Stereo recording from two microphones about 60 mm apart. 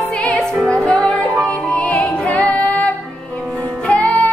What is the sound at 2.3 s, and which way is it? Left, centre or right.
Female singing, left.